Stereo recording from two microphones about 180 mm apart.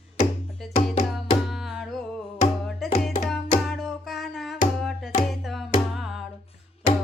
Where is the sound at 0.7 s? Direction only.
40° left (ahead or behind).